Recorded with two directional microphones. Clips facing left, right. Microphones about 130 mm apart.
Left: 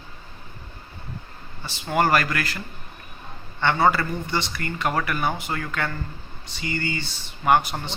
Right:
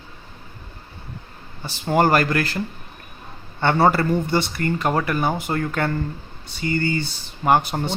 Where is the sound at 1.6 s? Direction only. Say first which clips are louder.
Right 4 dB; 35° right (ahead or behind).